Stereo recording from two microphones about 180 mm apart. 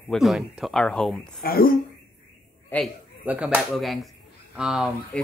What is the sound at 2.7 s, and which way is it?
Speech, 10° left (ahead or behind).